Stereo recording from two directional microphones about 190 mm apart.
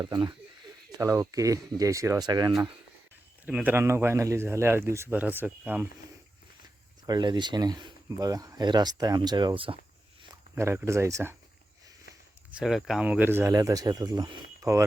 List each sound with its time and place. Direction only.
0.0 s speech: 20° right (ahead or behind)
3.4 s speech: 10° right (ahead or behind)
7.1 s speech: 25° right (ahead or behind)
10.5 s speech: 10° right (ahead or behind)
12.5 s speech: 5° right (ahead or behind)